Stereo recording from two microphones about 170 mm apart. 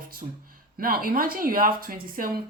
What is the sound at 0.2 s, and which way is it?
Speech, 35° right (ahead or behind).